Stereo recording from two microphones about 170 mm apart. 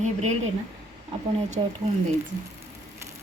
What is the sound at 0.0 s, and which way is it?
Speech, 40° right (ahead or behind).